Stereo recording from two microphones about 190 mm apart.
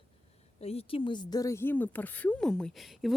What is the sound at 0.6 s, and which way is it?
A woman's voice, 30° left (ahead or behind).